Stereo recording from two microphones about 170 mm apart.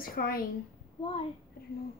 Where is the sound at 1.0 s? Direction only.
30° left (ahead or behind).